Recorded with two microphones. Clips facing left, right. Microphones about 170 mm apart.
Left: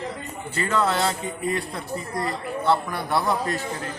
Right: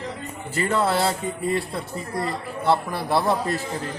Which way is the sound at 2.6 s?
30° right (ahead or behind).